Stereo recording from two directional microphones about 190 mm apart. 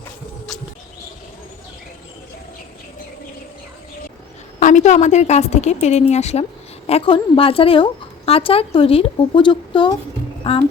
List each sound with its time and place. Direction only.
4.6 s a woman's voice: 40° left (ahead or behind)